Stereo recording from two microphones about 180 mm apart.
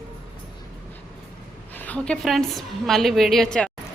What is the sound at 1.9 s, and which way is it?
A woman's voice, 5° left (ahead or behind).